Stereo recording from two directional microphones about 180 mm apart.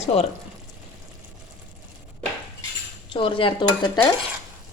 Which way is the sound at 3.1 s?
30° left (ahead or behind).